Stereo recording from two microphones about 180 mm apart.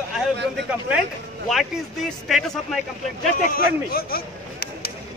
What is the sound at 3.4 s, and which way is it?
Speech, 55° left (ahead or behind).